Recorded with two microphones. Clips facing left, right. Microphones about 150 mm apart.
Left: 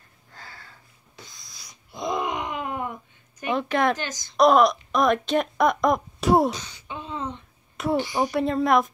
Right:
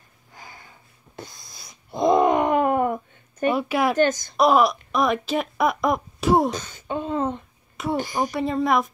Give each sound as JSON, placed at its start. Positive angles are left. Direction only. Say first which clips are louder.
{"t": 0.3, "sound": "a sound", "louder": "right 1 dB", "side_deg": -15}
{"t": 1.1, "sound": "wail", "louder": "right 8 dB", "side_deg": -55}
{"t": 3.5, "sound": "speech", "louder": "left 3 dB", "side_deg": -10}
{"t": 4.0, "sound": "a woman's voice", "louder": "right 14 dB", "side_deg": -50}
{"t": 4.4, "sound": "speech", "louder": "left 1 dB", "side_deg": -5}
{"t": 6.5, "sound": "a sound", "louder": "right 7 dB", "side_deg": -50}
{"t": 7.7, "sound": "a sound", "louder": "left 2 dB", "side_deg": 0}
{"t": 8.0, "sound": "a woman's voice", "louder": "even", "side_deg": -45}
{"t": 8.3, "sound": "speech", "louder": "left 1 dB", "side_deg": 0}